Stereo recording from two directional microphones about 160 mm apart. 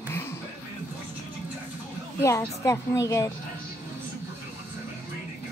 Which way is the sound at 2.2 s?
20° left (ahead or behind).